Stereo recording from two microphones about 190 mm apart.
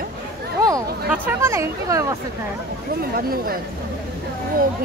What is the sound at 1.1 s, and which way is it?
Speech, 10° right (ahead or behind).